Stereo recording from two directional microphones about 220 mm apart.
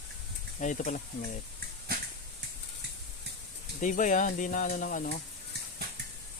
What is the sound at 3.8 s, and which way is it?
Speech, 35° left (ahead or behind).